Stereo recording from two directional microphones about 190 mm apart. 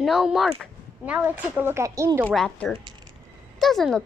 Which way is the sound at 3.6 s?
Centre (ahead or behind).